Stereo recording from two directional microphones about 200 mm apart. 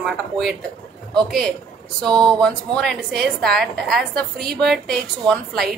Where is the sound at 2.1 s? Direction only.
20° right (ahead or behind).